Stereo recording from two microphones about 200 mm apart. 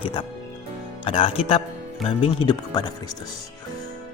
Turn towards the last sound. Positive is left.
turn(degrees=20)  # may be behind; listen again after turning